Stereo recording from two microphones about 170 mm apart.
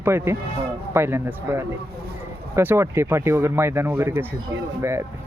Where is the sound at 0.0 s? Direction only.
15° right (ahead or behind).